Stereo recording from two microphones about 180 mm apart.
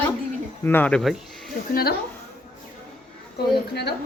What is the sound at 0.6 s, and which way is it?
Speech, 10° left (ahead or behind).